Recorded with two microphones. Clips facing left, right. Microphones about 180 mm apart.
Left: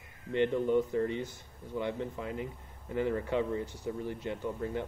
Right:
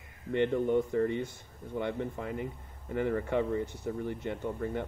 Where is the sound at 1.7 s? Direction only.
55° right (ahead or behind).